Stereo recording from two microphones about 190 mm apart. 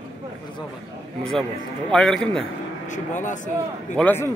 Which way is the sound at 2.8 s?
40° left (ahead or behind).